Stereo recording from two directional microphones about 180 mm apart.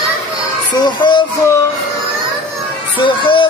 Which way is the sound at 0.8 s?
25° left (ahead or behind).